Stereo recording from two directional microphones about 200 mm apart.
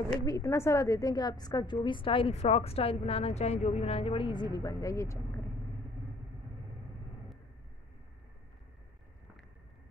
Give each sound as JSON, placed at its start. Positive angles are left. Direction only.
{"t": 0.2, "sound": "a woman's voice", "side_deg": 15}